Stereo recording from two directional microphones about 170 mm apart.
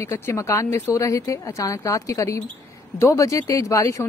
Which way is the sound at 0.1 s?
15° left (ahead or behind).